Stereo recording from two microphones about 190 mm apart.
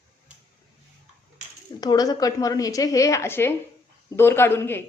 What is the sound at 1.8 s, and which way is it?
A woman's voice, 20° left (ahead or behind).